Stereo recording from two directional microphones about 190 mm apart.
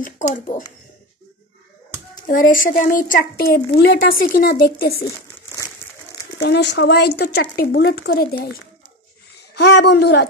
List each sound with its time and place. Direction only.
0.0 s a woman's voice: 45° left (ahead or behind)
2.2 s a woman's voice: 45° left (ahead or behind)
5.8 s crumpling: 10° left (ahead or behind)
6.4 s speech: 65° left (ahead or behind)
9.6 s speech: 60° left (ahead or behind)